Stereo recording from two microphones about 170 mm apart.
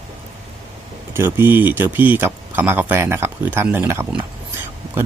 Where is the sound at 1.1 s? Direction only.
15° right (ahead or behind).